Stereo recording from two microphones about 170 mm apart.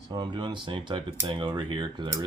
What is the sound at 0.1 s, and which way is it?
Speech, 25° right (ahead or behind).